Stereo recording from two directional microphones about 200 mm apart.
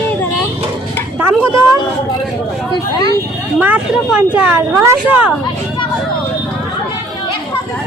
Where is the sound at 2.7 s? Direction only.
20° left (ahead or behind).